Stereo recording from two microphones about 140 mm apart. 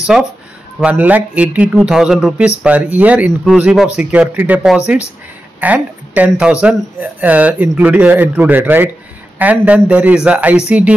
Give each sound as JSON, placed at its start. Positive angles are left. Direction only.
{"t": 0.0, "sound": "speech", "side_deg": -5}